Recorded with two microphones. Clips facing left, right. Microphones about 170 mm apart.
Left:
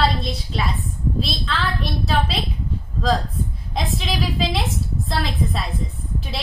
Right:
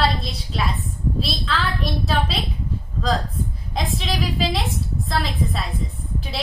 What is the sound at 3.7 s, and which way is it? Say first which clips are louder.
A woman's voice: even; centre (ahead or behind).